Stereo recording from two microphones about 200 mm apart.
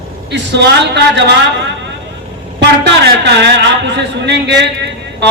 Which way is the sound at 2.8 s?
60° right (ahead or behind).